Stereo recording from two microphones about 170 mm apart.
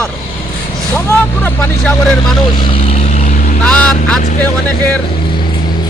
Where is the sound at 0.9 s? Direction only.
10° left (ahead or behind).